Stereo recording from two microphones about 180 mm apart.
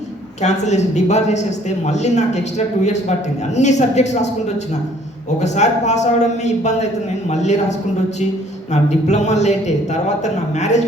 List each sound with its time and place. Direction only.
0.4 s a man's voice: 40° left (ahead or behind)